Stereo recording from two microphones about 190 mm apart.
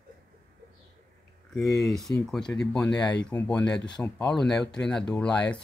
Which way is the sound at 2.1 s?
15° left (ahead or behind).